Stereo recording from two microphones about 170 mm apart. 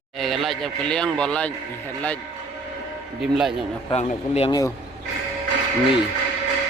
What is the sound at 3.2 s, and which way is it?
Speech, centre (ahead or behind).